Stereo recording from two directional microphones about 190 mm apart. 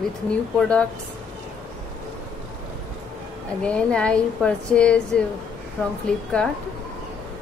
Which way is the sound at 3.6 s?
5° left (ahead or behind).